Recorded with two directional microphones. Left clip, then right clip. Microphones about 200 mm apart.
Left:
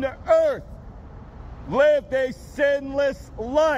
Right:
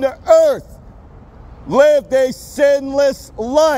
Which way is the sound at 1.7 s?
80° right.